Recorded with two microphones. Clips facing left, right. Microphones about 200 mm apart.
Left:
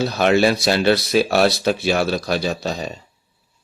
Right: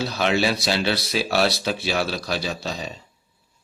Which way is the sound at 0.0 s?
50° left (ahead or behind).